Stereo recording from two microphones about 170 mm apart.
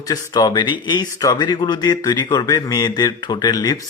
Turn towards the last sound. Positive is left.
turn(degrees=25)  # may be behind; listen again after turning